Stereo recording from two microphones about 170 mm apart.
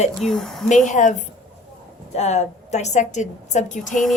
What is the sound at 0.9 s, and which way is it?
A woman's voice, 45° left (ahead or behind).